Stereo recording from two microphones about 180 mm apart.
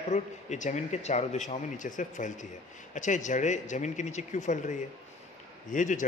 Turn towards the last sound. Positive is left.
turn(degrees=45)  # may be behind; listen again after turning